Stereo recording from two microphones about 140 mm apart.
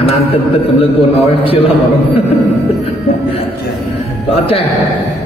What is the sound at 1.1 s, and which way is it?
Speech, 45° left (ahead or behind).